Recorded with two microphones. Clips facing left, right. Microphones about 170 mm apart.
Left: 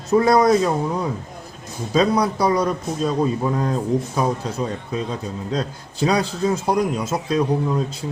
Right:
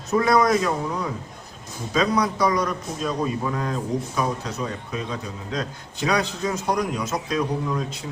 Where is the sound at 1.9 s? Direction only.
30° left (ahead or behind).